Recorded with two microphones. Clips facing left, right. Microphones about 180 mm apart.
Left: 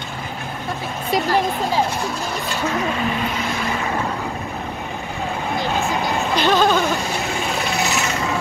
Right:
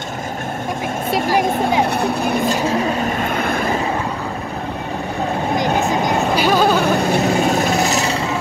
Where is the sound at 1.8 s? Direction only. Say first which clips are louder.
Right 5 dB; 60° right (ahead or behind).